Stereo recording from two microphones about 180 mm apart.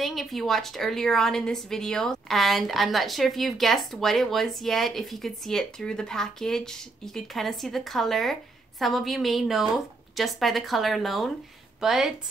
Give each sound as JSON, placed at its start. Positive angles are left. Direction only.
{"t": 0.0, "sound": "a woman's voice", "side_deg": 0}